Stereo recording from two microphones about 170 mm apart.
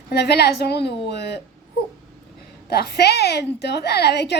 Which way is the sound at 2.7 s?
70° left (ahead or behind).